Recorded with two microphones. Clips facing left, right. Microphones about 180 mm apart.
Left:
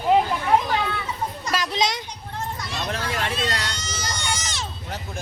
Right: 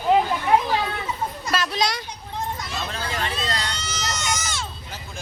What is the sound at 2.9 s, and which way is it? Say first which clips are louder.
Vehicle: left 3 dB; 70° left (ahead or behind).